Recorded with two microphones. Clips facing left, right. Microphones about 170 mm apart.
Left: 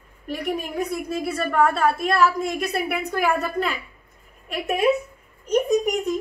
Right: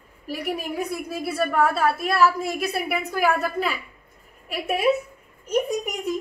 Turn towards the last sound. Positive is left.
turn(degrees=-10)  # may be behind; listen again after turning